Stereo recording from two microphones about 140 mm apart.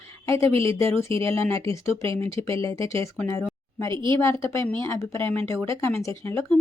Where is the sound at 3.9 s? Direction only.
35° right (ahead or behind).